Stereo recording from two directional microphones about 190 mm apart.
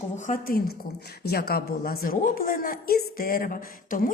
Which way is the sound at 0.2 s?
45° left (ahead or behind).